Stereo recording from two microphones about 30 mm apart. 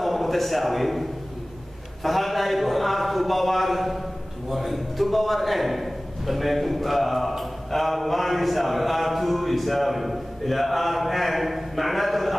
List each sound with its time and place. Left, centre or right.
0.0 s a man's voice: centre
2.0 s a man's voice: centre